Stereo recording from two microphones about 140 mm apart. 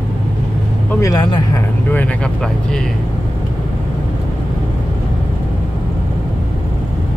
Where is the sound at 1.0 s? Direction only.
25° left (ahead or behind).